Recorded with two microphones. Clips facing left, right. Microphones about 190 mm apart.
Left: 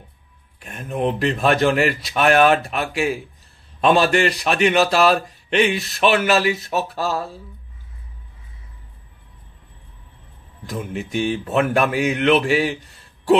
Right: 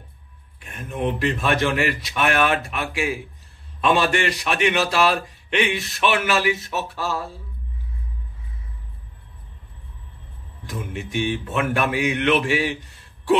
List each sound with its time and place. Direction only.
0.7 s a man's voice: 35° left (ahead or behind)
10.7 s a man's voice: 40° left (ahead or behind)